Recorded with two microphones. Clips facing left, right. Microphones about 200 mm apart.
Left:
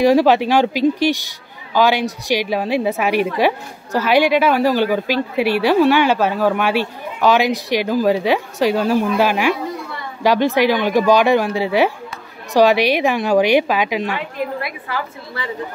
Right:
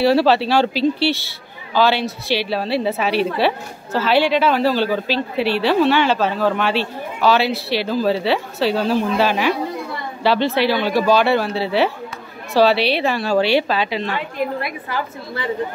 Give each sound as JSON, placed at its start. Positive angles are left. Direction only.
{"t": 0.0, "sound": "a man's voice", "side_deg": 15}
{"t": 14.6, "sound": "a woman's voice", "side_deg": -25}